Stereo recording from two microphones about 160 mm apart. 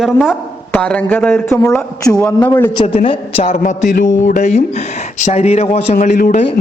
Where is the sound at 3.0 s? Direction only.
45° left (ahead or behind).